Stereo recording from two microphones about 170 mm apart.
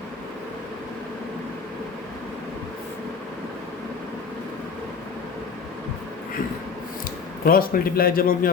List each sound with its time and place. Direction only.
7.4 s a man's voice: 60° left (ahead or behind)